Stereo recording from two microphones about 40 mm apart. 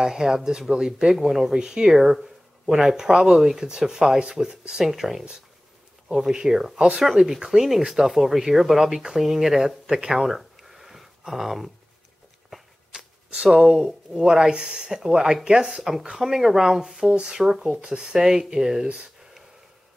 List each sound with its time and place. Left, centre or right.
0.0 s speech: centre
1.5 s speech: centre
12.9 s a sound: centre
13.7 s speech: centre
17.1 s speech: centre